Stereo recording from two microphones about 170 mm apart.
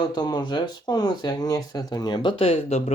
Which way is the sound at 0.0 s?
25° left (ahead or behind).